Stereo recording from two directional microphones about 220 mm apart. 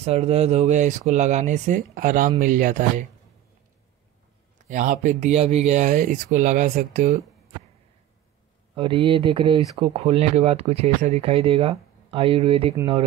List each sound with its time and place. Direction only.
0.0 s speech: 30° right (ahead or behind)
4.6 s speech: 35° right (ahead or behind)
8.7 s speech: 25° right (ahead or behind)